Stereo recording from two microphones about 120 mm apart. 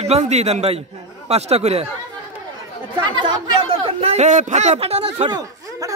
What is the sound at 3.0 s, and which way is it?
Speech, 40° right (ahead or behind).